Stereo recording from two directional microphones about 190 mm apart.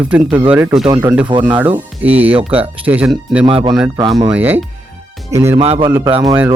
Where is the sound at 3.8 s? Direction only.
10° right (ahead or behind).